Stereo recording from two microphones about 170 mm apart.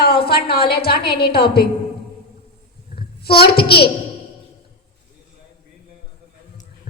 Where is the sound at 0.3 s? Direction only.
65° left (ahead or behind).